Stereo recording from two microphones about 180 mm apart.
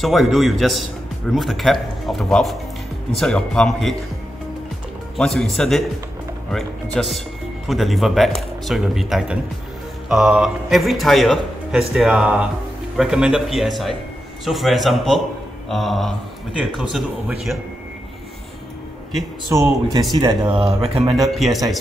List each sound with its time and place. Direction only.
0.0 s a man's voice: centre (ahead or behind)
5.1 s a man's voice: centre (ahead or behind)
19.5 s speech: 15° right (ahead or behind)
20.2 s speech: 30° right (ahead or behind)
21.4 s a man's voice: centre (ahead or behind)